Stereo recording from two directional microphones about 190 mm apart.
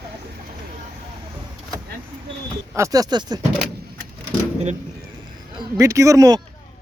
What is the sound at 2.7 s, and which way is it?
Speech, 15° right (ahead or behind).